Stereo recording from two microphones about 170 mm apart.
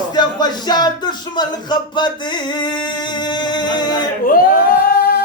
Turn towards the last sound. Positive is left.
turn(degrees=65)  # may be behind; listen again after turning